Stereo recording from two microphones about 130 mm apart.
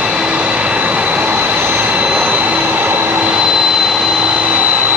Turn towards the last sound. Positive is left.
turn(degrees=-10)  # may be behind; listen again after turning